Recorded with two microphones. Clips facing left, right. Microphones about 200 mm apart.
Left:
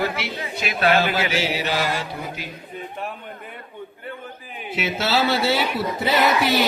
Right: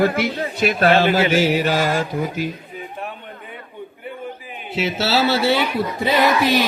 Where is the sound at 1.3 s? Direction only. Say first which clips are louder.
Right 6 dB; 50° right (ahead or behind).